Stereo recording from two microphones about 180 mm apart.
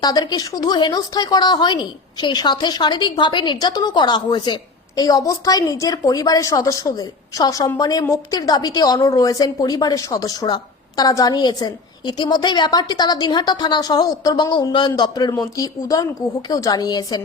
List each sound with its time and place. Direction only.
0.0 s speech: 20° left (ahead or behind)